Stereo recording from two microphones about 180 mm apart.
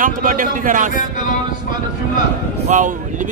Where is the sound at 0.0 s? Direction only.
50° right (ahead or behind).